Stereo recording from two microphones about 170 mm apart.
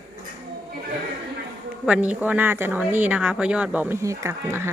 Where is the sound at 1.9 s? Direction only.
10° right (ahead or behind).